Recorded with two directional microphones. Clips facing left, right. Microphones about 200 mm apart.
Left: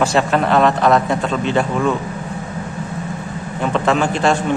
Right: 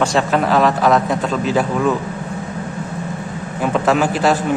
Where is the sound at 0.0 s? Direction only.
Centre (ahead or behind).